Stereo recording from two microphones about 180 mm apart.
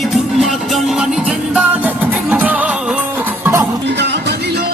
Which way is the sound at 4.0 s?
70° right (ahead or behind).